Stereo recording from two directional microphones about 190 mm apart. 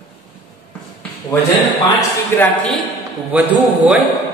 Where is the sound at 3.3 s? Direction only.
5° right (ahead or behind).